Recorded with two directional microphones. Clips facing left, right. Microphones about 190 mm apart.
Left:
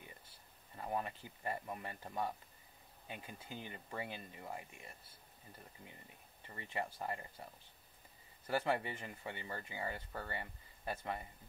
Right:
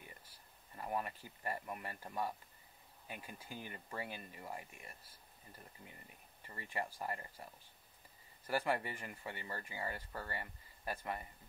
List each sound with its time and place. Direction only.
0.0 s speech: 25° left (ahead or behind)
8.5 s speech: 25° left (ahead or behind)